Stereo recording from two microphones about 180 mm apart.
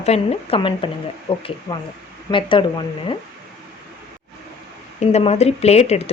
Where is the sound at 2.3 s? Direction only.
30° left (ahead or behind).